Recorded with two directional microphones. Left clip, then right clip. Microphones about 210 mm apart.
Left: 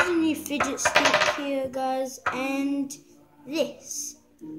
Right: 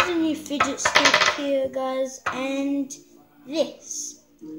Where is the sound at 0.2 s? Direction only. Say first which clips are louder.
Right 1 dB; 30° left (ahead or behind).